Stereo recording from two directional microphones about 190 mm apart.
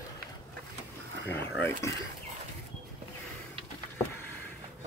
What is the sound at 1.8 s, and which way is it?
Speech, 15° left (ahead or behind).